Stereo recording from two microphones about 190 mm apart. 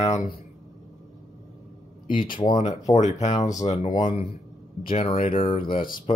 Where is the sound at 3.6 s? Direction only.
40° left (ahead or behind).